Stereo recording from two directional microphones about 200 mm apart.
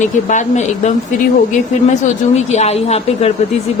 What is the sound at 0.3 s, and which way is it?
A woman's voice, 35° left (ahead or behind).